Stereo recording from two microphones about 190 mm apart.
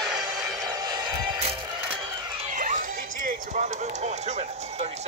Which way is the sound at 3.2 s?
40° right (ahead or behind).